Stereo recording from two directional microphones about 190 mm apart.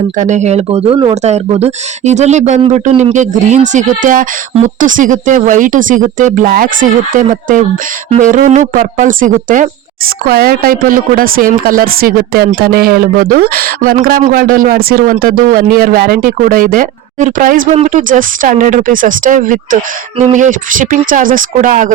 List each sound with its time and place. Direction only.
0.2 s speech: 40° right (ahead or behind)